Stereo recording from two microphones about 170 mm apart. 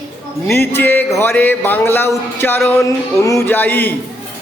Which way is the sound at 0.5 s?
10° left (ahead or behind).